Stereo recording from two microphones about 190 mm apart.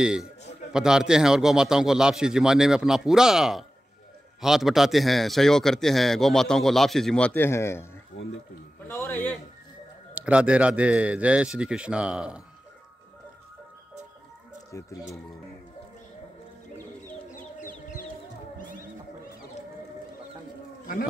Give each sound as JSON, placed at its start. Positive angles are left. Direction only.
{"t": 0.0, "sound": "a man's voice", "side_deg": -5}
{"t": 8.2, "sound": "speech", "side_deg": 70}
{"t": 8.8, "sound": "a man's voice", "side_deg": 10}
{"t": 10.1, "sound": "a man's voice", "side_deg": -5}
{"t": 14.7, "sound": "a sound", "side_deg": 15}
{"t": 17.6, "sound": "bird", "side_deg": 45}